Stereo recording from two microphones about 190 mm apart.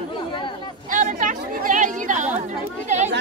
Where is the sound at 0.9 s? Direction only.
45° right (ahead or behind).